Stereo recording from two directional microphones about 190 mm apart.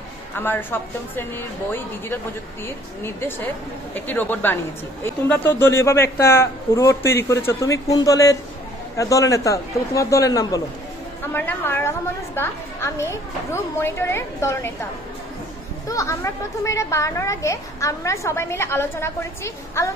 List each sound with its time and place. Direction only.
0.4 s a woman's voice: 10° left (ahead or behind)
3.0 s a woman's voice: 10° left (ahead or behind)
15.9 s a woman's voice: 15° left (ahead or behind)